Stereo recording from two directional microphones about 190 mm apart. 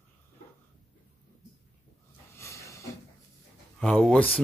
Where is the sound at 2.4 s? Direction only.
15° left (ahead or behind).